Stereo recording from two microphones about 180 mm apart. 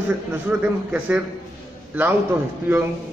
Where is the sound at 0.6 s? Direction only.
5° right (ahead or behind).